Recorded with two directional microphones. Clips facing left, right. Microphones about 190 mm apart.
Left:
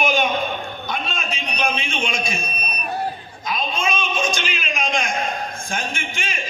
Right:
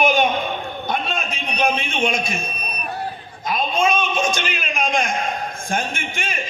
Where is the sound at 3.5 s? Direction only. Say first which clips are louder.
Right 4 dB; 55° right (ahead or behind).